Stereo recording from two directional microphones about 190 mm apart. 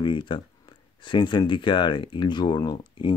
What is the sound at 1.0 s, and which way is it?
Speech, 25° left (ahead or behind).